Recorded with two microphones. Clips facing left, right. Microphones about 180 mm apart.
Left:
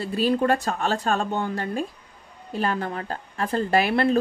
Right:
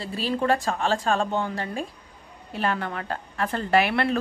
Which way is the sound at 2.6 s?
35° left (ahead or behind).